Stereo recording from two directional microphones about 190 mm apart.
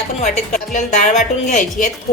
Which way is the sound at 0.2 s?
40° left (ahead or behind).